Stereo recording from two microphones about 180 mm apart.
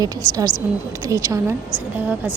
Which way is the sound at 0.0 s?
20° right (ahead or behind).